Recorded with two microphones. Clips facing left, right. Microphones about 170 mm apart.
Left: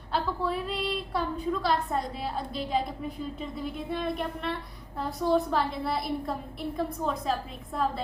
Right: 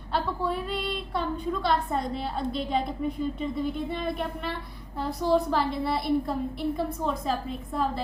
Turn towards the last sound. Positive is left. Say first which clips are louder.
# right 1 dB
turn(degrees=0)  # may be behind; listen again after turning